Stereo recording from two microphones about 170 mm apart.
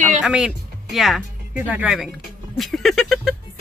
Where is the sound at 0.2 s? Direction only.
5° right (ahead or behind).